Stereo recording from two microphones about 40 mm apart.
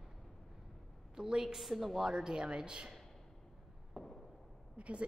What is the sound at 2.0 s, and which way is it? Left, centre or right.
Speech, centre.